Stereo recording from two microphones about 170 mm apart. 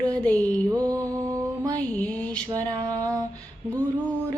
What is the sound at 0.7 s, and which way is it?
Female singing, 20° right (ahead or behind).